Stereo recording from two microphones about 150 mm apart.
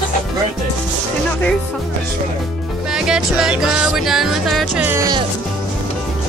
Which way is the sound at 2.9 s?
5° right (ahead or behind).